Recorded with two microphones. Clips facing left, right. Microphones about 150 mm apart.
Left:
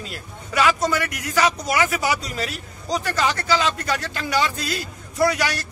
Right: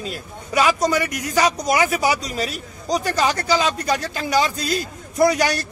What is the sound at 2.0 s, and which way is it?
A man's voice, 15° right (ahead or behind).